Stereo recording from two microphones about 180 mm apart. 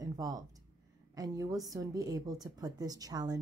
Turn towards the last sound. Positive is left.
turn(degrees=-20)  # may be behind; listen again after turning